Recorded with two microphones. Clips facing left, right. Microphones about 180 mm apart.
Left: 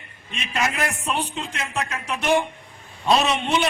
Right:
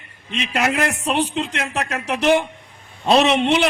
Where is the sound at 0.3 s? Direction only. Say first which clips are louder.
Right 5 dB; 80° right.